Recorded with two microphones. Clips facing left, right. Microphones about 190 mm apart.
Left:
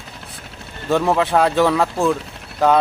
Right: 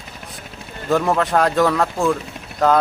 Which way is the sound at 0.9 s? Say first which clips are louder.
Left 1 dB; centre (ahead or behind).